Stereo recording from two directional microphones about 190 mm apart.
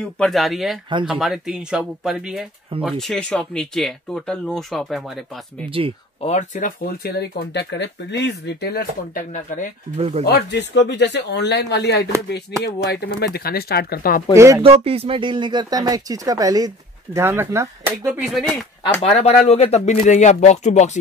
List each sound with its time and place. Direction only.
0.2 s speech: centre (ahead or behind)
5.7 s speech: 30° right (ahead or behind)
6.2 s speech: 40° left (ahead or behind)
9.9 s speech: 35° right (ahead or behind)
10.2 s speech: 60° left (ahead or behind)
14.3 s speech: 15° right (ahead or behind)
14.6 s speech: 30° right (ahead or behind); by 18.2 s 15° right (ahead or behind)
18.8 s speech: 30° left (ahead or behind)